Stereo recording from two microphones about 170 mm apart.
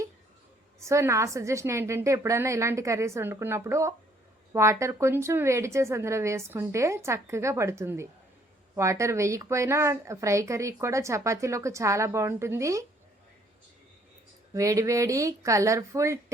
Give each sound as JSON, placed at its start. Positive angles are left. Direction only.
{"t": 0.8, "sound": "a woman's voice", "side_deg": -15}
{"t": 14.5, "sound": "a woman's voice", "side_deg": -20}